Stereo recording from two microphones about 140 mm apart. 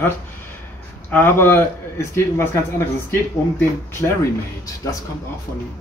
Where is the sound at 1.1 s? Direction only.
15° left (ahead or behind).